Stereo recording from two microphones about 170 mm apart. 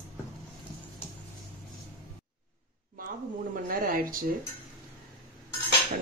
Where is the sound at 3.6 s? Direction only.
55° right (ahead or behind).